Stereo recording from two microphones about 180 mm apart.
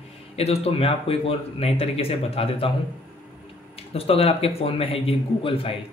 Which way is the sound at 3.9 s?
35° left (ahead or behind).